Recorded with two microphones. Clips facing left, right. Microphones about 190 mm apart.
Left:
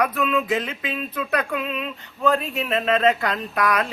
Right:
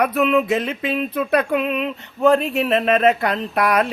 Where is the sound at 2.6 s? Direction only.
25° right (ahead or behind).